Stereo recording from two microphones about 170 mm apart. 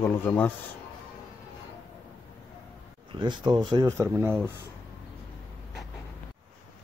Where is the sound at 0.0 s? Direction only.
15° left (ahead or behind).